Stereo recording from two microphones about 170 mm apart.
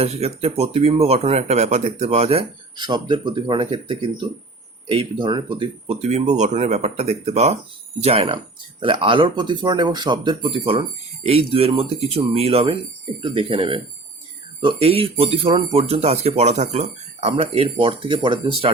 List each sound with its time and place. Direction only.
0.0 s speech: 40° right (ahead or behind)
2.7 s speech: 25° right (ahead or behind)